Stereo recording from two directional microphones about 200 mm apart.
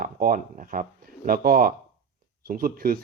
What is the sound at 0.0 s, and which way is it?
Speech, 45° right (ahead or behind).